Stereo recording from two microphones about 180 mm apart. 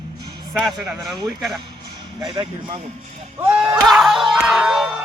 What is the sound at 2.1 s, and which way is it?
Speech, 25° right (ahead or behind).